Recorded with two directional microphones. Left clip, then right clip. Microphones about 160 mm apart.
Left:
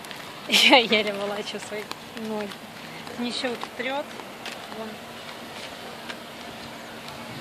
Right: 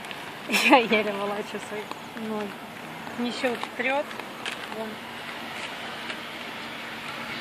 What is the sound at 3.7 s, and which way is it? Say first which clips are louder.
Speech: right 4 dB; 40° right (ahead or behind).